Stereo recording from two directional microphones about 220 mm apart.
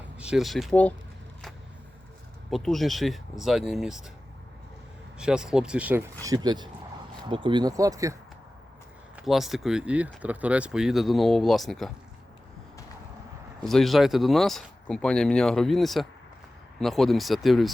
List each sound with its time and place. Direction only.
0.2 s speech: 5° right (ahead or behind)
2.5 s speech: centre (ahead or behind)
5.1 s speech: 5° right (ahead or behind)
6.2 s speech: 20° right (ahead or behind)
9.1 s speech: centre (ahead or behind)
13.6 s speech: centre (ahead or behind)